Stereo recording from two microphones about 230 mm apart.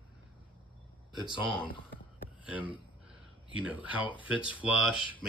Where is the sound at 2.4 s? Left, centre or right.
Centre.